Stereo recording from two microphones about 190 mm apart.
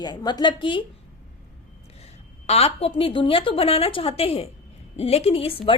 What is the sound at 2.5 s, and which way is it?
A woman's voice, 30° left (ahead or behind).